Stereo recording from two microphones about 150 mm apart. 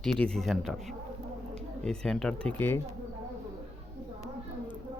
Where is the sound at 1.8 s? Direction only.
5° left (ahead or behind).